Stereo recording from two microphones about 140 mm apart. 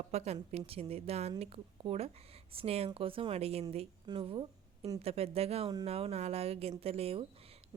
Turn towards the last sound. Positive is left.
turn(degrees=-45)  # may be behind; listen again after turning